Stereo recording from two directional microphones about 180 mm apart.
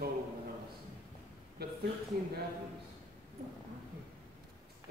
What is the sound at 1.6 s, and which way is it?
Speech, 60° right (ahead or behind).